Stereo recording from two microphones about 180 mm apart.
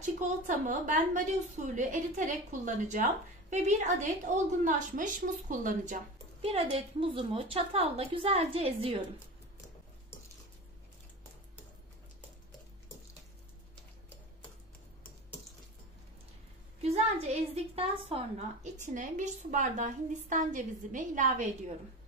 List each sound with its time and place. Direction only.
0.0 s a woman's voice: 45° right (ahead or behind)
6.5 s a woman's voice: 30° right (ahead or behind)
16.8 s a woman's voice: 35° right (ahead or behind)
18.9 s a woman's voice: 45° right (ahead or behind)